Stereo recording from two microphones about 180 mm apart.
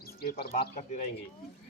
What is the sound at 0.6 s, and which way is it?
Speech, 45° left (ahead or behind).